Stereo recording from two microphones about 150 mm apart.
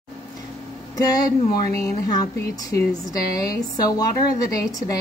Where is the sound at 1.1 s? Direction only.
25° left (ahead or behind).